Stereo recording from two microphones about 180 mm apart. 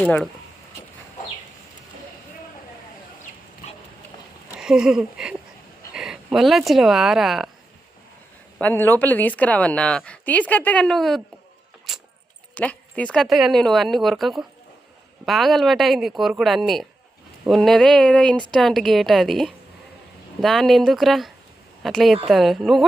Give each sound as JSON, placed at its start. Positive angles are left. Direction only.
{"t": 0.0, "sound": "speech", "side_deg": 5}
{"t": 3.6, "sound": "dog", "side_deg": 40}
{"t": 4.5, "sound": "speech", "side_deg": -5}
{"t": 8.5, "sound": "speech", "side_deg": 10}
{"t": 11.9, "sound": "vehicle", "side_deg": -5}
{"t": 12.5, "sound": "speech", "side_deg": 5}